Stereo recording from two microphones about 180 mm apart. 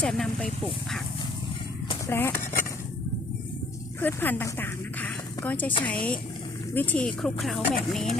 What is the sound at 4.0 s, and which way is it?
Speech, 10° left (ahead or behind).